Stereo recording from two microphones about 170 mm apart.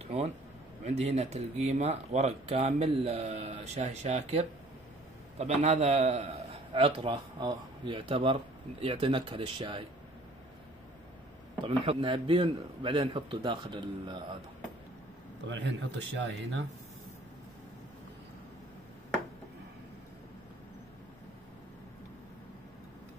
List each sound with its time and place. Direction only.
0.0 s a sound: 40° right (ahead or behind)
0.8 s speech: 40° right (ahead or behind)
11.6 s a man's voice: 35° right (ahead or behind)
15.4 s speech: 90° right